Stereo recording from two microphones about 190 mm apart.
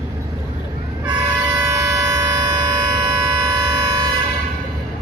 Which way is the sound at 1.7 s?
20° right (ahead or behind).